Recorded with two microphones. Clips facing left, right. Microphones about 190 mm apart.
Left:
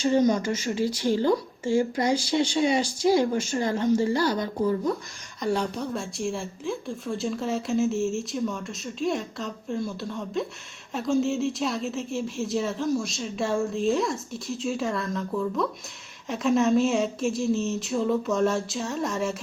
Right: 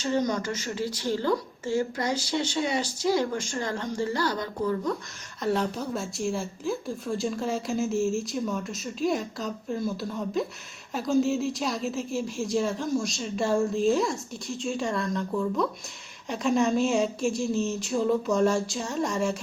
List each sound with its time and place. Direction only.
0.0 s speech: 10° left (ahead or behind)
5.4 s speech: centre (ahead or behind)